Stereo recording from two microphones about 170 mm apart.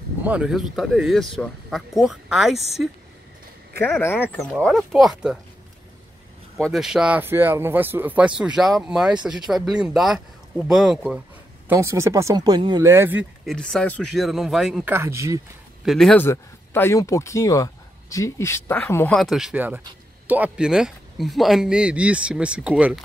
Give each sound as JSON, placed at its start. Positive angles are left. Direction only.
{"t": 0.2, "sound": "speech", "side_deg": -5}
{"t": 3.8, "sound": "speech", "side_deg": 10}
{"t": 6.5, "sound": "speech", "side_deg": 0}
{"t": 11.7, "sound": "speech", "side_deg": -15}
{"t": 13.5, "sound": "speech", "side_deg": 5}
{"t": 15.8, "sound": "speech", "side_deg": 0}
{"t": 16.3, "sound": "speech", "side_deg": 15}
{"t": 19.1, "sound": "speech", "side_deg": 0}